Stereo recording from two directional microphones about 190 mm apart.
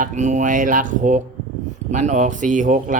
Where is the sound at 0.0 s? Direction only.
40° right (ahead or behind).